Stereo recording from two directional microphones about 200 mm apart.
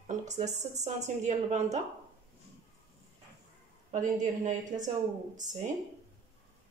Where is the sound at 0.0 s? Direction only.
35° right (ahead or behind).